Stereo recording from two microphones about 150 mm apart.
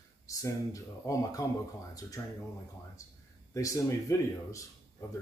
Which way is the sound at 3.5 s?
20° left (ahead or behind).